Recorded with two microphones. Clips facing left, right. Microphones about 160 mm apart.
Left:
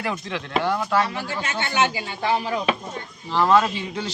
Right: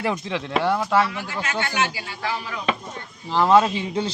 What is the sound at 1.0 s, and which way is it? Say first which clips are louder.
Speech: even; 30° left (ahead or behind).